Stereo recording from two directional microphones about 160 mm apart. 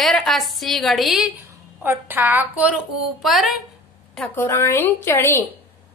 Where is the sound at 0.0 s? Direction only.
Centre (ahead or behind).